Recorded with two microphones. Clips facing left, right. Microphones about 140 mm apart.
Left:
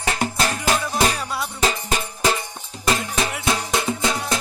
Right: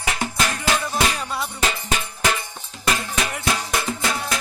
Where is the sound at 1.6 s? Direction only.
35° left (ahead or behind).